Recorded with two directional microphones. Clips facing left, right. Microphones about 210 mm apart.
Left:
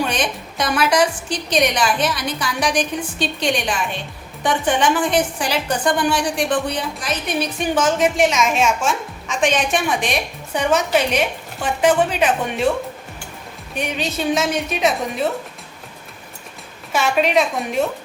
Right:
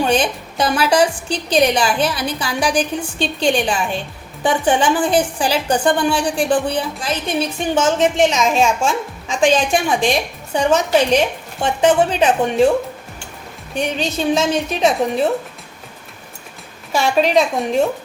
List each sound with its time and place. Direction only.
0.0 s a woman's voice: 30° right (ahead or behind)
13.7 s a woman's voice: 30° right (ahead or behind)
16.9 s a woman's voice: 30° right (ahead or behind)